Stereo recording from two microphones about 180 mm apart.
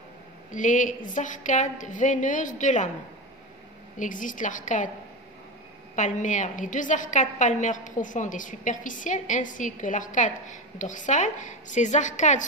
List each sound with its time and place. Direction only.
0.5 s a woman's voice: 45° left (ahead or behind)
4.0 s a woman's voice: 45° left (ahead or behind)
5.9 s a woman's voice: 45° left (ahead or behind)